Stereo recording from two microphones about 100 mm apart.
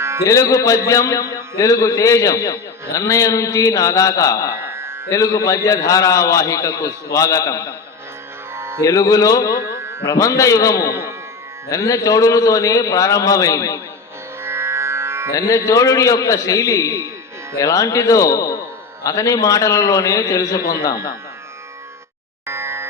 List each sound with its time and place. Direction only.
0.3 s a man's voice: 35° left (ahead or behind)
4.6 s music: 25° right (ahead or behind)
5.1 s a man's voice: 35° left (ahead or behind)
8.5 s music: 25° right (ahead or behind)
8.8 s a man's voice: 35° left (ahead or behind)
9.7 s music: 25° right (ahead or behind)
10.1 s a man's voice: 35° left (ahead or behind)
14.4 s music: 25° right (ahead or behind)
15.4 s a man's voice: 35° left (ahead or behind)
22.4 s a sound: 25° right (ahead or behind)